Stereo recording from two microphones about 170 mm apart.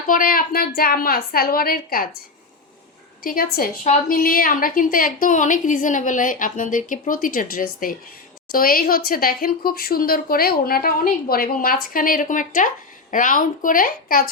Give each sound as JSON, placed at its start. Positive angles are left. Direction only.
{"t": 0.1, "sound": "speech", "side_deg": 55}
{"t": 3.2, "sound": "a woman's voice", "side_deg": 60}